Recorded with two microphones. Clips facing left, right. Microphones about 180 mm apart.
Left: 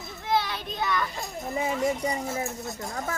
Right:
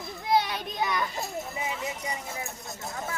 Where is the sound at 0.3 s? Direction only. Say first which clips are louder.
Right 1 dB; 15° right (ahead or behind).